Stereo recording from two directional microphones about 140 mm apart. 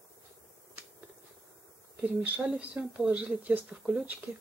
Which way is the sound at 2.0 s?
10° right (ahead or behind).